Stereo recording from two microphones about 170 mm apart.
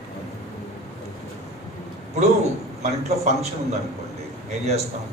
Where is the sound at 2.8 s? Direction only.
40° right (ahead or behind).